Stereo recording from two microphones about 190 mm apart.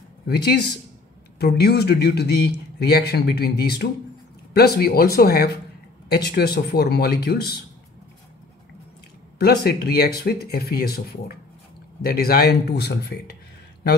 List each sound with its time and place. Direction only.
0.3 s a man's voice: 55° left (ahead or behind)
9.4 s a man's voice: 55° left (ahead or behind)